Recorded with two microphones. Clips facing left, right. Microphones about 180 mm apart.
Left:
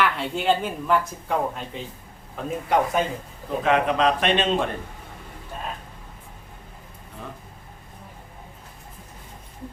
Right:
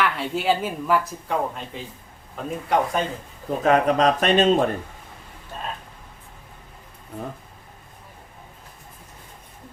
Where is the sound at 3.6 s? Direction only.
40° right (ahead or behind).